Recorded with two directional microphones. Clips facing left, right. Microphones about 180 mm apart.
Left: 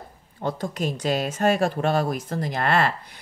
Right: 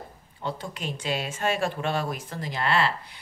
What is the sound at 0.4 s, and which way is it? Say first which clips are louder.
Speech: left 6 dB; 45° left (ahead or behind).